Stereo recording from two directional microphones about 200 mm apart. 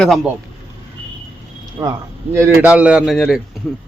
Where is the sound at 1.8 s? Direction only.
15° right (ahead or behind).